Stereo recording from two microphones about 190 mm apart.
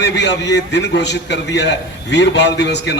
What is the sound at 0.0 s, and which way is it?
A man's voice, 65° left (ahead or behind).